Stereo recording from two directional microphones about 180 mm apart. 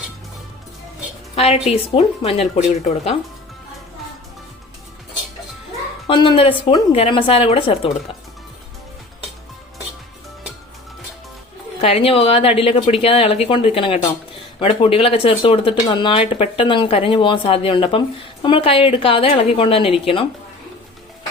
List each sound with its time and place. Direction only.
1.4 s speech: 35° left (ahead or behind)
6.1 s a woman's voice: 25° left (ahead or behind)
11.8 s speech: 30° left (ahead or behind)